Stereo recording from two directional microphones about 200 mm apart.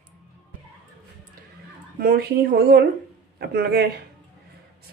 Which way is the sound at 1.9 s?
50° right (ahead or behind).